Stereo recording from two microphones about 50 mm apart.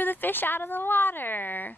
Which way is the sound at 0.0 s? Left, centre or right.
Left.